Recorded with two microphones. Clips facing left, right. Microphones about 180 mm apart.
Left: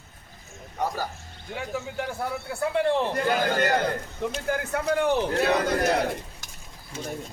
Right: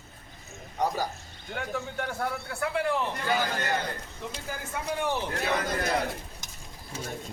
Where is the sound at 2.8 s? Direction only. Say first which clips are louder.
Left 6 dB; 30° left (ahead or behind).